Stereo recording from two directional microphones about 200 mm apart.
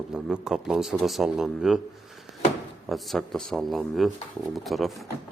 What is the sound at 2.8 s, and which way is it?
Speech, centre (ahead or behind).